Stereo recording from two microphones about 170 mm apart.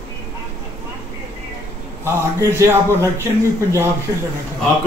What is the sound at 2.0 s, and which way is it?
Speech, 15° right (ahead or behind).